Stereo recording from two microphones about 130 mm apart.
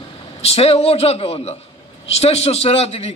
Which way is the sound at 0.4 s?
50° left (ahead or behind).